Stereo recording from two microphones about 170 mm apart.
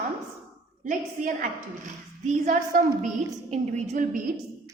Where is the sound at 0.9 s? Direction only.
50° right (ahead or behind).